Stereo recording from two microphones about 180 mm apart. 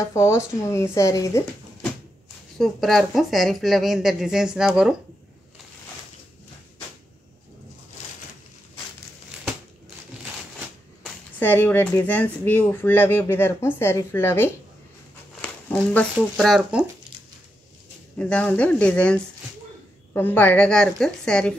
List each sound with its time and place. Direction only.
0.0 s speech: 15° left (ahead or behind)
2.6 s a woman's voice: centre (ahead or behind)
11.3 s speech: 10° left (ahead or behind)
18.2 s a woman's voice: 5° left (ahead or behind)